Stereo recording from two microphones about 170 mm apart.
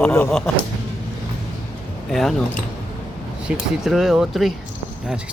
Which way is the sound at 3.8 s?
5° right (ahead or behind).